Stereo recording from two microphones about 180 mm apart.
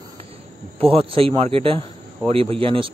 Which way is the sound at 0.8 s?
30° right (ahead or behind).